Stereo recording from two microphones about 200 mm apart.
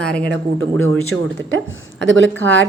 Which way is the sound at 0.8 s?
90° right.